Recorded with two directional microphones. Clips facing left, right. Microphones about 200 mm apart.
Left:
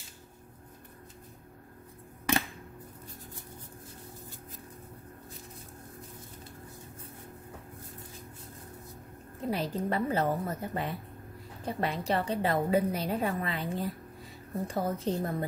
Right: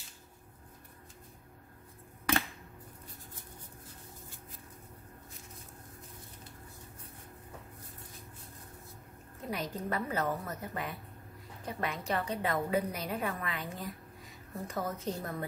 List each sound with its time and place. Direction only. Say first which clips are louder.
9.5 s a woman's voice: left 5 dB; 30° left (ahead or behind)